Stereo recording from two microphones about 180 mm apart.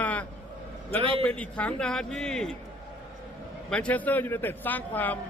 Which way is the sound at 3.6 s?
5° left (ahead or behind).